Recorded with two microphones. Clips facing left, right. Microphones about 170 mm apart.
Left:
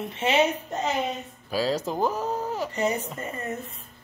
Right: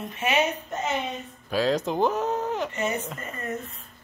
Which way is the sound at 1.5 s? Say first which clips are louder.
Right 2 dB; 5° left (ahead or behind).